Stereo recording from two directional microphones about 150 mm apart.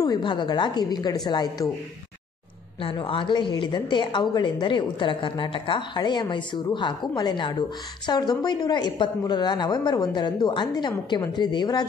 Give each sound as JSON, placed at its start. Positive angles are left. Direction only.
{"t": 0.0, "sound": "a woman's voice", "side_deg": 30}
{"t": 2.8, "sound": "a woman's voice", "side_deg": 35}